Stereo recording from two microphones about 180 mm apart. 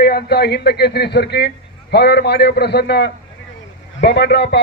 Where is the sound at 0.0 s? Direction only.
60° left (ahead or behind).